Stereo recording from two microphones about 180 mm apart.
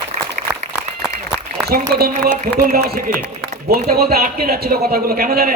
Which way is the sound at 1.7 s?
55° right (ahead or behind).